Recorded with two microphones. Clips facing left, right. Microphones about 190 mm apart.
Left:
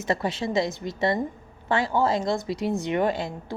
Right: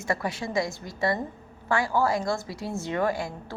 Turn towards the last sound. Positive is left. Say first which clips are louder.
# left 2 dB
turn(degrees=20)  # may be behind; listen again after turning